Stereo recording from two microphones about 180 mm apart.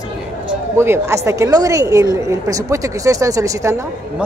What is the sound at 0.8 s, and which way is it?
A woman's voice, 15° right (ahead or behind).